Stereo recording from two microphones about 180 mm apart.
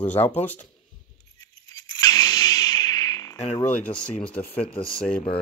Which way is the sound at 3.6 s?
10° left (ahead or behind).